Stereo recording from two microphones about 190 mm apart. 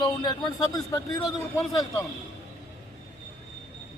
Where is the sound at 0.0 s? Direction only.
20° left (ahead or behind).